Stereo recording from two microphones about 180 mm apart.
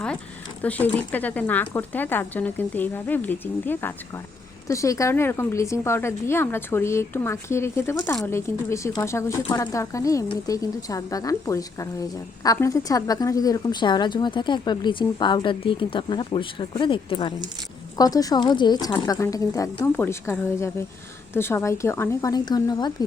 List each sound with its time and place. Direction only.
0.6 s a woman's voice: 10° left (ahead or behind)